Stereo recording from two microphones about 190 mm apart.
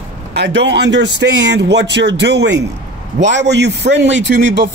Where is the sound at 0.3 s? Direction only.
60° right (ahead or behind).